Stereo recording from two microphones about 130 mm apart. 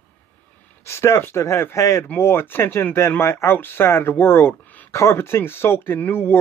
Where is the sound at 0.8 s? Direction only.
20° left (ahead or behind).